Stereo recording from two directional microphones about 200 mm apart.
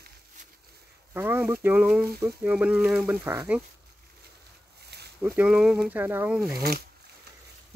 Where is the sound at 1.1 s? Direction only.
10° right (ahead or behind).